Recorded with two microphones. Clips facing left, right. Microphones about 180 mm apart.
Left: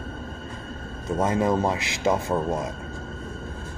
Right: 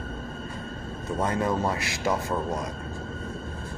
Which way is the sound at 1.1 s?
20° left (ahead or behind).